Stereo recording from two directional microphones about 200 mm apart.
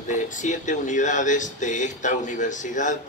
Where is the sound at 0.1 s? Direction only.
40° left (ahead or behind).